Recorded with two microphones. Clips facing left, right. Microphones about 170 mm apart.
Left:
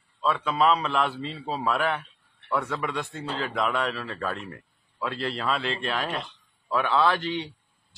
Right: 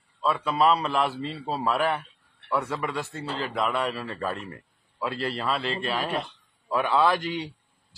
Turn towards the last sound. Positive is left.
turn(degrees=-10)  # may be behind; listen again after turning